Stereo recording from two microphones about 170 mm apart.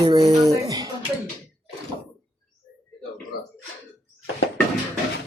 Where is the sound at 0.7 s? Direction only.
20° right (ahead or behind).